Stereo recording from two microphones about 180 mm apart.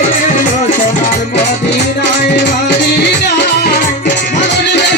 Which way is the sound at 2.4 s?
70° left (ahead or behind).